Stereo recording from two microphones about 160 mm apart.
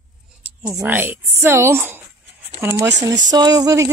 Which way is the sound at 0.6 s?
15° right (ahead or behind).